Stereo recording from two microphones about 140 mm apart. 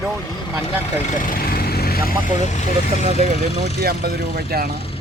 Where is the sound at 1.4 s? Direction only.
90° left.